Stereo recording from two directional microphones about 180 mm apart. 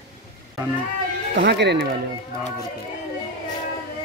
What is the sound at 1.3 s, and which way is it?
Speech, 70° right (ahead or behind).